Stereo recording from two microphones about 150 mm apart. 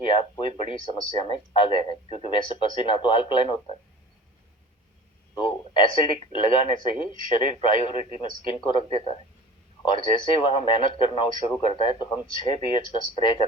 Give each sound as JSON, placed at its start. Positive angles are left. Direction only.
{"t": 0.0, "sound": "speech", "side_deg": 35}
{"t": 5.3, "sound": "speech", "side_deg": 35}